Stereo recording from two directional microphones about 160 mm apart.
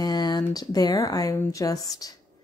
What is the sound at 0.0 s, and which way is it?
Speech, 25° left (ahead or behind).